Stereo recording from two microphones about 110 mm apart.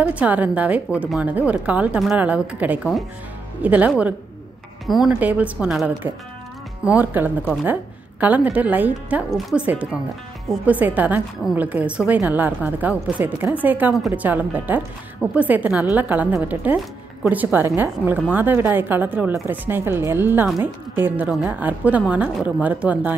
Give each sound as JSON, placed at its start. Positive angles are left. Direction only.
{"t": 0.0, "sound": "a woman's voice", "side_deg": -15}
{"t": 4.8, "sound": "speech", "side_deg": 0}
{"t": 5.2, "sound": "a woman's voice", "side_deg": -15}
{"t": 6.0, "sound": "a woman's voice", "side_deg": -20}